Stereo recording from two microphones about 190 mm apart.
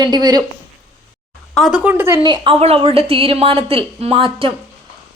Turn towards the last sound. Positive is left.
turn(degrees=-30)  # may be behind; listen again after turning